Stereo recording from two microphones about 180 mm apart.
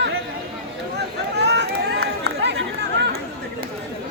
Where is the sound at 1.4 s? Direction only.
70° right (ahead or behind).